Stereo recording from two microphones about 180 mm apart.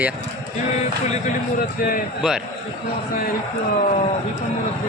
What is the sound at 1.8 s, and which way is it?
Speech, 50° left (ahead or behind).